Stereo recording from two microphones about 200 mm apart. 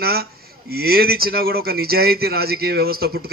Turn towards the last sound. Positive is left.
turn(degrees=-50)  # may be behind; listen again after turning